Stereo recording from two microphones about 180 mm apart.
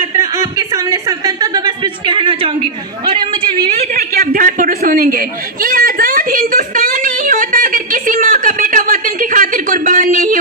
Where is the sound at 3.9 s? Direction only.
55° right (ahead or behind).